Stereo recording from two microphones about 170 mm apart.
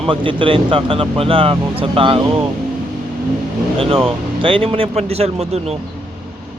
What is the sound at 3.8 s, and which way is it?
Speech, 35° right (ahead or behind).